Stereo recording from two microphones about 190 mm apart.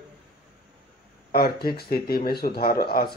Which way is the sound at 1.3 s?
55° left (ahead or behind).